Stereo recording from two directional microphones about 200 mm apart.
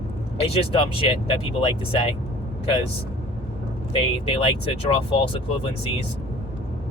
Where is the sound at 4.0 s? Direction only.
25° left (ahead or behind).